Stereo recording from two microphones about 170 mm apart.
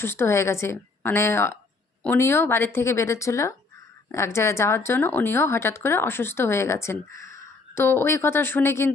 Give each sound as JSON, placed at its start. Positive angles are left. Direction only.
{"t": 0.0, "sound": "a woman's voice", "side_deg": 15}